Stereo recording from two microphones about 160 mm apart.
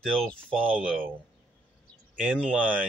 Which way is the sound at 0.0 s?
5° left (ahead or behind).